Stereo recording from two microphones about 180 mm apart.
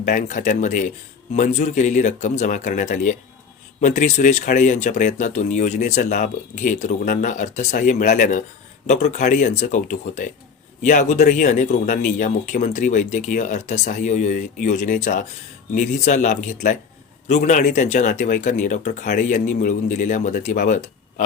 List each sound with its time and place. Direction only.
0.0 s speech: 45° left (ahead or behind)